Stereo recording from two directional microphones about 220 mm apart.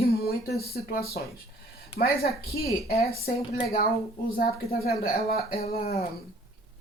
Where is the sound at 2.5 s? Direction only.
45° left (ahead or behind).